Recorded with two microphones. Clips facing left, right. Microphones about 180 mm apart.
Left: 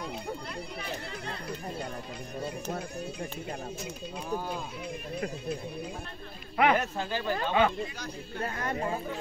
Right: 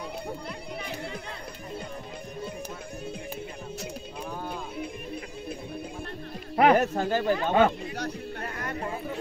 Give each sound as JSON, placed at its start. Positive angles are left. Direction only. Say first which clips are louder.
{"t": 6.5, "sound": "snake", "louder": "right 5 dB", "side_deg": -40}
{"t": 7.4, "sound": "speech", "louder": "right 3 dB", "side_deg": -45}